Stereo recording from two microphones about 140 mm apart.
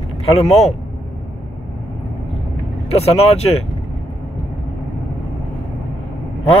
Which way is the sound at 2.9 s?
45° left (ahead or behind).